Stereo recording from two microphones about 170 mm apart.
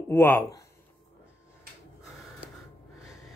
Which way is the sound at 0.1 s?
15° left (ahead or behind).